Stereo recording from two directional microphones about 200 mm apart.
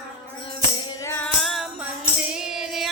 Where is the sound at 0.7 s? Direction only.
20° left (ahead or behind).